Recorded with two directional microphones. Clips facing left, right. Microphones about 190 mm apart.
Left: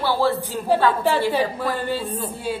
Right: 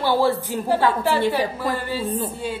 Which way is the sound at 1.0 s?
15° left (ahead or behind).